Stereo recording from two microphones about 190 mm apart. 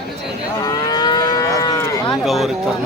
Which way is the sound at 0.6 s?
20° left (ahead or behind).